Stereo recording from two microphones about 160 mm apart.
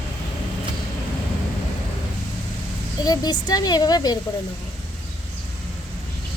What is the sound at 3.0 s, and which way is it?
Speech, 25° left (ahead or behind).